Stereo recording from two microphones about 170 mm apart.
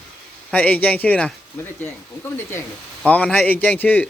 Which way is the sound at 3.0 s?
5° left (ahead or behind).